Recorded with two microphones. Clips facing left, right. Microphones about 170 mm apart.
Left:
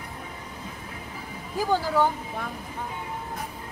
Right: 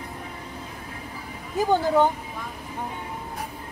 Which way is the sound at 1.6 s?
20° right (ahead or behind).